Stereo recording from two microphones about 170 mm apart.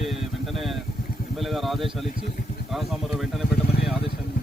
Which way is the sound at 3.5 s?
65° left (ahead or behind).